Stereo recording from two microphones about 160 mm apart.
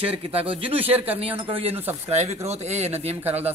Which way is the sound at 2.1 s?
45° right (ahead or behind).